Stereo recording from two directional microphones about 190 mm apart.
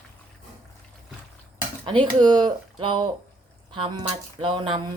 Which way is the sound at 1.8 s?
25° right (ahead or behind).